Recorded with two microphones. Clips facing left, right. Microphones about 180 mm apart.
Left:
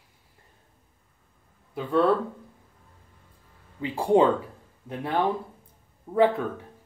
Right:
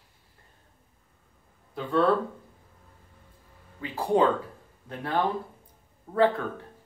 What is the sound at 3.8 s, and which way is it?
Speech, 20° left (ahead or behind).